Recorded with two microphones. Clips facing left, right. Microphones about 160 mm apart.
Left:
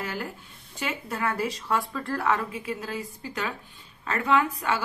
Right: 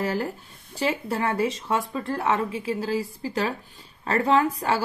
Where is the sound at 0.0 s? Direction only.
35° right (ahead or behind).